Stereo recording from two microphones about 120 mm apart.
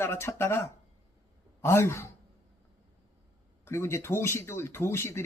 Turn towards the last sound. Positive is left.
turn(degrees=20)  # may be behind; listen again after turning